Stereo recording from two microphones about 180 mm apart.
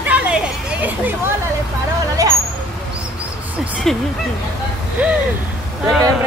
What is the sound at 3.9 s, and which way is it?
Speech, centre (ahead or behind).